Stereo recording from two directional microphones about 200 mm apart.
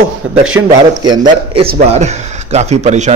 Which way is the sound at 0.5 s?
10° right (ahead or behind).